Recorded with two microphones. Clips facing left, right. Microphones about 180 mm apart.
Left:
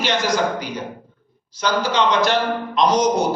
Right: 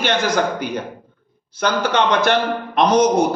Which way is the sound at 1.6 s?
60° right (ahead or behind).